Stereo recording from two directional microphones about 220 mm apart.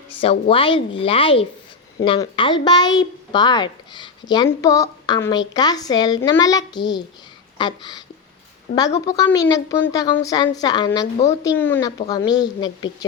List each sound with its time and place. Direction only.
0.1 s a child's voice: 25° left (ahead or behind)